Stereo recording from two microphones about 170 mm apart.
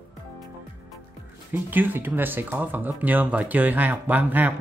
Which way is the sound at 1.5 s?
10° right (ahead or behind).